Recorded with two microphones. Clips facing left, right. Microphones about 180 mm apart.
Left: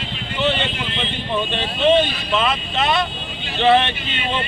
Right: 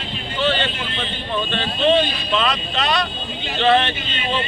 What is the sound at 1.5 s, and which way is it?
Speech, 20° left (ahead or behind).